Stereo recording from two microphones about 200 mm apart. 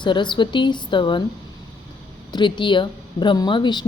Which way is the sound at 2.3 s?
25° left (ahead or behind).